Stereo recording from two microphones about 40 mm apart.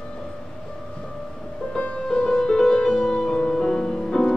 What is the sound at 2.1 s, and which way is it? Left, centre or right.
Music, centre.